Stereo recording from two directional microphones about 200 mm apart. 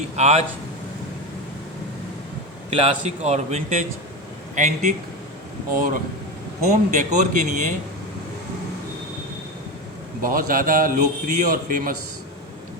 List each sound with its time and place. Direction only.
0.2 s a man's voice: 35° right (ahead or behind)
2.6 s a man's voice: 30° right (ahead or behind)
10.2 s speech: 45° right (ahead or behind)